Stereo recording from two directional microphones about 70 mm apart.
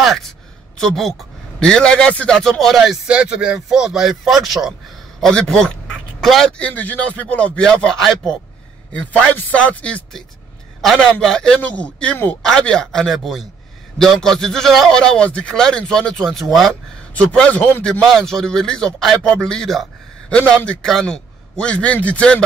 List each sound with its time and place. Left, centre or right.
0.0 s a sound: centre
0.7 s speech: centre
2.6 s speech: centre
3.1 s speech: centre
5.2 s speech: centre
6.6 s speech: left; by 8.4 s centre
9.3 s speech: left
10.8 s speech: centre
15.0 s speech: centre
17.1 s speech: centre
18.1 s speech: centre
20.2 s a man's voice: centre